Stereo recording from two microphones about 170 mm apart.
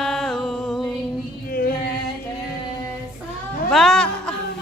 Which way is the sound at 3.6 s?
5° left (ahead or behind).